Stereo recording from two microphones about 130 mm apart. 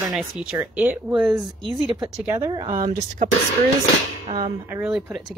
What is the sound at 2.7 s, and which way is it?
Speech, 80° right.